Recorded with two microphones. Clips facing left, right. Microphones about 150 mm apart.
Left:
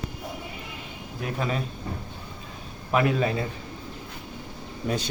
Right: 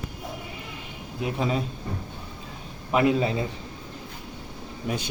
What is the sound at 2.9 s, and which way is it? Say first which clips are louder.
Speech: right 1 dB; 20° right (ahead or behind).